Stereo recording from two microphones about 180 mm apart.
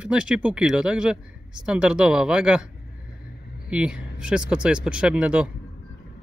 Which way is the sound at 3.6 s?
5° right (ahead or behind).